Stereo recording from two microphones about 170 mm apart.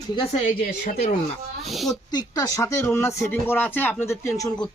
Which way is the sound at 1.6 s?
Centre (ahead or behind).